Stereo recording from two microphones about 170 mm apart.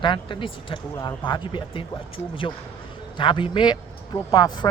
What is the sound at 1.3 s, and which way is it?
Speech, 30° left (ahead or behind).